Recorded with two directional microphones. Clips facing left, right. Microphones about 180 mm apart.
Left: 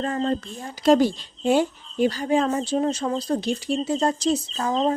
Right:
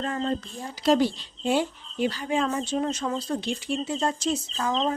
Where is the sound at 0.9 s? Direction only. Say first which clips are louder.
Left 4 dB; 45° left (ahead or behind).